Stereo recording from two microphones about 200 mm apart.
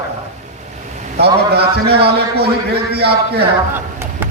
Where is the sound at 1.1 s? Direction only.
55° right (ahead or behind).